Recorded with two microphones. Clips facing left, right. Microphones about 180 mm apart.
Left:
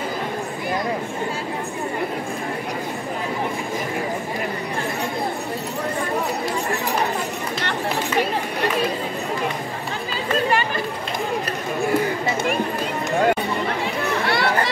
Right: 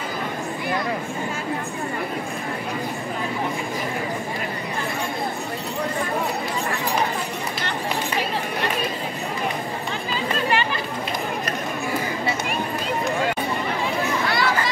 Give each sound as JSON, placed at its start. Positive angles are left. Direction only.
{"t": 14.2, "sound": "chatter", "side_deg": 60}